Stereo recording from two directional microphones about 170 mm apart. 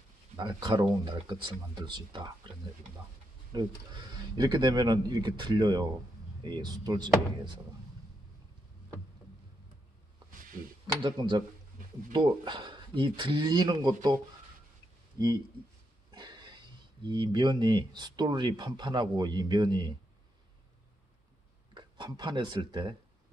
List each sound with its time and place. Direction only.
0.4 s speech: 25° right (ahead or behind)
3.5 s speech: 25° right (ahead or behind)
10.4 s a sound: 55° right (ahead or behind)
11.0 s speech: 25° right (ahead or behind)
15.1 s speech: 25° right (ahead or behind)
21.7 s speech: 25° right (ahead or behind)